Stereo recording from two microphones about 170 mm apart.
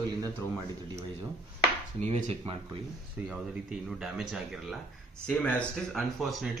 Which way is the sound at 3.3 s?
5° right (ahead or behind).